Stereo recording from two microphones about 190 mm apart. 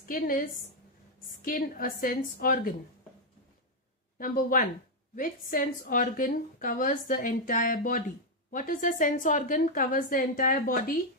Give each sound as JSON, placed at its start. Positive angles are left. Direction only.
{"t": 0.1, "sound": "a woman's voice", "side_deg": 45}
{"t": 4.2, "sound": "a woman's voice", "side_deg": 45}